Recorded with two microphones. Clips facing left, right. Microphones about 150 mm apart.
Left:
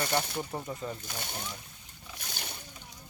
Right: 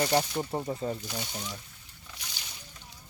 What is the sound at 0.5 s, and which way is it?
Speech, 30° right (ahead or behind).